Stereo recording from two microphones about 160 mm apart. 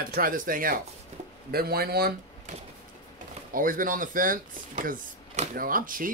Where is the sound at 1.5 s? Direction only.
70° right (ahead or behind).